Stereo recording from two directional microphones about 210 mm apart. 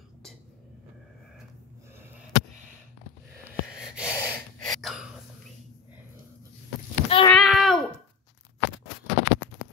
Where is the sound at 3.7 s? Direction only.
5° right (ahead or behind).